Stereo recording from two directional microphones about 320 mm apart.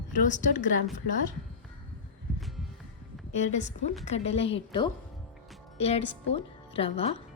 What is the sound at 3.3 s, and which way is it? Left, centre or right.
Speech, left.